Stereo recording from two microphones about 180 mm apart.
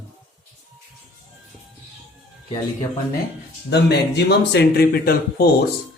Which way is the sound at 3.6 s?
70° left (ahead or behind).